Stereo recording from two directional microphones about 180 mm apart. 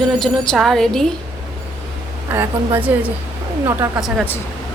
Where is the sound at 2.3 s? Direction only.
10° right (ahead or behind).